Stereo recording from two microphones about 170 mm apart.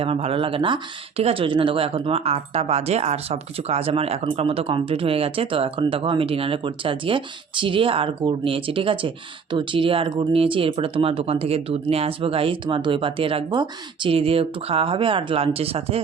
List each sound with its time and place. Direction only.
0.0 s speech: 35° right (ahead or behind)